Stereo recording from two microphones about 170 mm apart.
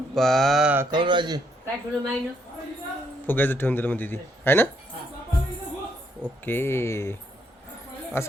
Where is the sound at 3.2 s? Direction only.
10° left (ahead or behind).